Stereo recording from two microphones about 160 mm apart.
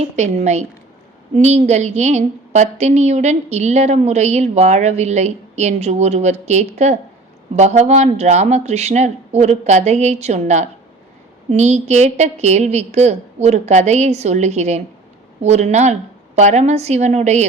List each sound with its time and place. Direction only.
0.0 s a woman's voice: 45° right (ahead or behind)